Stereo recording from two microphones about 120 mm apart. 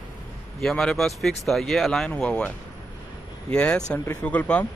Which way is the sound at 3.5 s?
10° left (ahead or behind).